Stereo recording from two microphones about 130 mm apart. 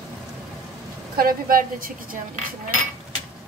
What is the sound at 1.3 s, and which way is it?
Speech, 90° right.